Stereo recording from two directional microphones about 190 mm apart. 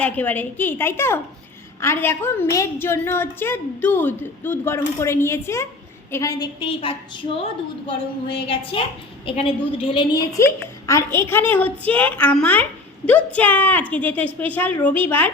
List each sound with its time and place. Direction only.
0.0 s a woman's voice: 10° left (ahead or behind)